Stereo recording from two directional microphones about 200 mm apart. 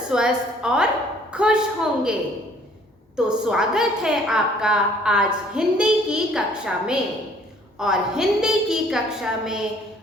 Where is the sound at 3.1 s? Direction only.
5° right (ahead or behind).